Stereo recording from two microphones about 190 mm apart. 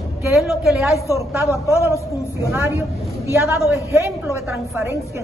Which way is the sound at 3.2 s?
15° right (ahead or behind).